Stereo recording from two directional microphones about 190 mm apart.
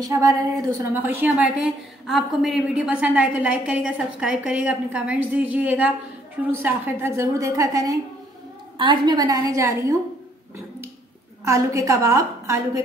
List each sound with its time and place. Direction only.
0.0 s a woman's voice: 15° right (ahead or behind)
11.4 s a woman's voice: 15° right (ahead or behind)